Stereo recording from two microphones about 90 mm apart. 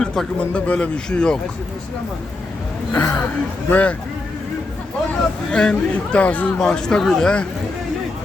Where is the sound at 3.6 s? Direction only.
15° left (ahead or behind).